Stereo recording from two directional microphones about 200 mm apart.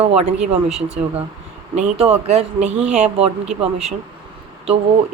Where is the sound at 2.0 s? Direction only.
30° right (ahead or behind).